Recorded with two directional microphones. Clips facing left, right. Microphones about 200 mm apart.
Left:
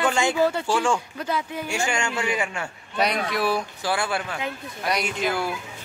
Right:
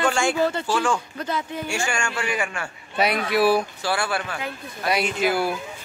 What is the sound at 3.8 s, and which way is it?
Speech, 20° left (ahead or behind).